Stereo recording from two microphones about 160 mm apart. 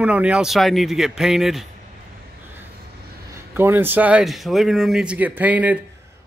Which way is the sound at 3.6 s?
15° right (ahead or behind).